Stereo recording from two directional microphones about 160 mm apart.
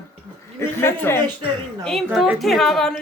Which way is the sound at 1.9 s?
Centre (ahead or behind).